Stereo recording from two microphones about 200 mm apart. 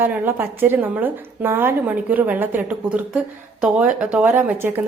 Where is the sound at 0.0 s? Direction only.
10° right (ahead or behind).